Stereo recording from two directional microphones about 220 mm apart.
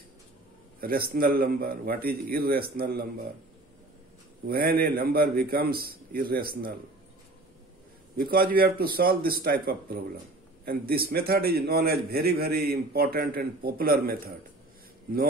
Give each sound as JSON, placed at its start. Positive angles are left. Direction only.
{"t": 0.7, "sound": "a man's voice", "side_deg": -40}
{"t": 4.5, "sound": "a man's voice", "side_deg": -45}
{"t": 8.2, "sound": "a man's voice", "side_deg": -40}